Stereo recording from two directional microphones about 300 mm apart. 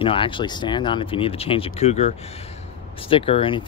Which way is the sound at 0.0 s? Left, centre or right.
Centre.